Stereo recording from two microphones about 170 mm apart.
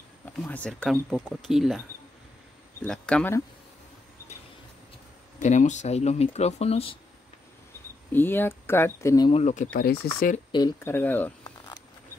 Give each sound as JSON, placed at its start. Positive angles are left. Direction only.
{"t": 0.2, "sound": "speech", "side_deg": 10}
{"t": 2.8, "sound": "speech", "side_deg": 5}
{"t": 5.4, "sound": "speech", "side_deg": 45}
{"t": 8.1, "sound": "speech", "side_deg": 10}
{"t": 9.3, "sound": "speech", "side_deg": 45}
{"t": 9.8, "sound": "speech", "side_deg": 55}
{"t": 10.5, "sound": "speech", "side_deg": 20}